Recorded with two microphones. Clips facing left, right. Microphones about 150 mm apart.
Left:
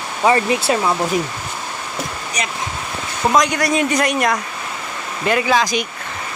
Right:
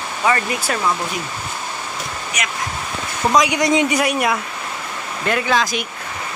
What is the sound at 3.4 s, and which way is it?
Speech, 20° right (ahead or behind).